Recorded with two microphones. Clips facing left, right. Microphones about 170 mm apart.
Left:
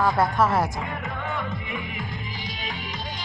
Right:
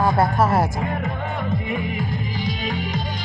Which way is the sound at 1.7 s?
40° right (ahead or behind).